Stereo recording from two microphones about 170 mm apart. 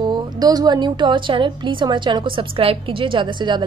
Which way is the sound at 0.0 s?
25° right (ahead or behind).